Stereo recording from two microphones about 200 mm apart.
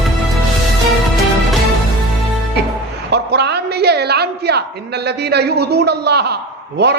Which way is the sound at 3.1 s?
55° right (ahead or behind).